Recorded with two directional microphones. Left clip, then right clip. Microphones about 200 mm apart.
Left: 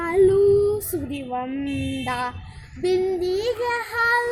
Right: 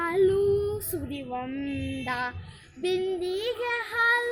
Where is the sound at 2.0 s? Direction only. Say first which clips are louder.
Left 3 dB; centre (ahead or behind).